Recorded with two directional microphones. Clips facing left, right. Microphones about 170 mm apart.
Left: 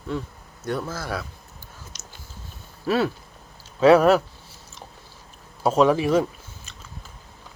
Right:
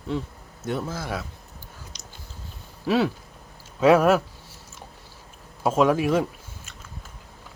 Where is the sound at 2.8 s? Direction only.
15° right (ahead or behind).